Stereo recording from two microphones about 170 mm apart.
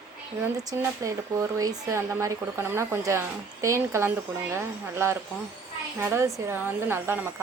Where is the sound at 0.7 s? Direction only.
20° right (ahead or behind).